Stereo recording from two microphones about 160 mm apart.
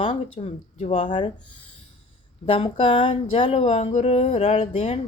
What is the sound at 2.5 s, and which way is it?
Speech, 35° left (ahead or behind).